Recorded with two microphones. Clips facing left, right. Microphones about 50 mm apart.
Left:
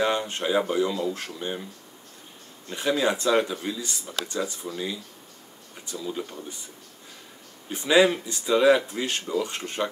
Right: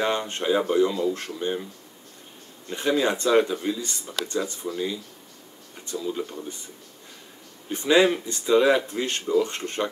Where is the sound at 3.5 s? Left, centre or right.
Centre.